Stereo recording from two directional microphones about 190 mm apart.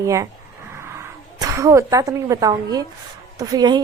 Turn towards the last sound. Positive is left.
turn(degrees=-20)  # may be behind; listen again after turning